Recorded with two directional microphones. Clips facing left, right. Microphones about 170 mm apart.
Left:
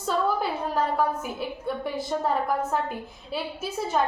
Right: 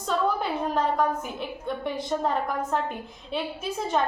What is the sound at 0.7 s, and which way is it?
A woman's voice, 5° left (ahead or behind).